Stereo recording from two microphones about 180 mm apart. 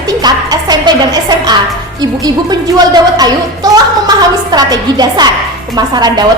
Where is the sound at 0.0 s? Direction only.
20° right (ahead or behind).